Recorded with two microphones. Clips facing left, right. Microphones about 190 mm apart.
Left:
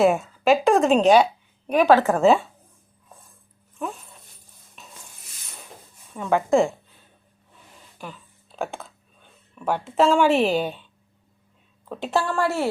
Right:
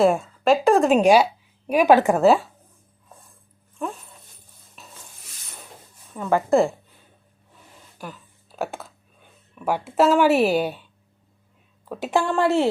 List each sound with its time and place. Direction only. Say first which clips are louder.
0.0 s a woman's voice: even; centre (ahead or behind); by 2.2 s 15° right (ahead or behind)
2.2 s a woman's voice: right 1 dB; centre (ahead or behind)
3.8 s dog: right 1 dB; centre (ahead or behind)
4.8 s stir: even; centre (ahead or behind)
6.1 s a woman's voice: right 1 dB; centre (ahead or behind)
8.5 s speech: right 1 dB; 5° right (ahead or behind)
11.9 s speech: right 2 dB; 10° right (ahead or behind)
12.2 s speech: right 4 dB; 20° right (ahead or behind)